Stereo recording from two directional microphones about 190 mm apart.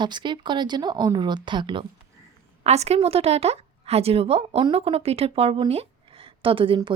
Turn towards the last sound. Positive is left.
turn(degrees=-25)  # may be behind; listen again after turning